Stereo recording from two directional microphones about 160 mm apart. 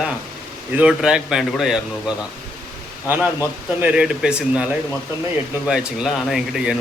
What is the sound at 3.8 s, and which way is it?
Speech, 10° right (ahead or behind).